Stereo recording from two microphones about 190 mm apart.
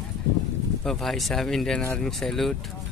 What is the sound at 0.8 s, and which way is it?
Speech, centre (ahead or behind).